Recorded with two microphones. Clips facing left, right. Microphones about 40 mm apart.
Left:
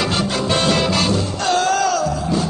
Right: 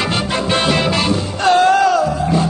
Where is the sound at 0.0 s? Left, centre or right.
Right.